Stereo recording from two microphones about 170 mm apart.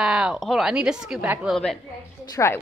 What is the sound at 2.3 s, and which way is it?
Speech, 15° left (ahead or behind).